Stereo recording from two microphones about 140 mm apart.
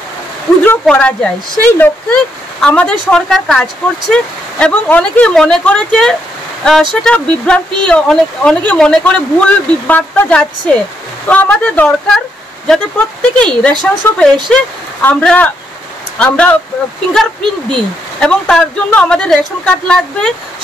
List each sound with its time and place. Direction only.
0.7 s speech: 10° left (ahead or behind)